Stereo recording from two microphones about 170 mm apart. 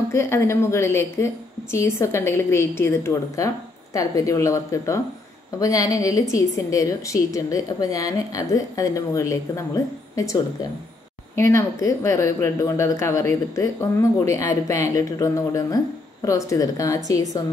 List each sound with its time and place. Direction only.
0.1 s a woman's voice: 15° left (ahead or behind)